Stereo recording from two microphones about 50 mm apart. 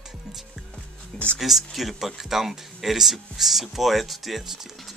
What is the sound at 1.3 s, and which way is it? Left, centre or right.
Speech, centre.